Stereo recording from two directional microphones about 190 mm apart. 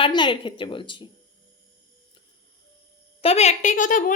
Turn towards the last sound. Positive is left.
turn(degrees=45)  # may be behind; listen again after turning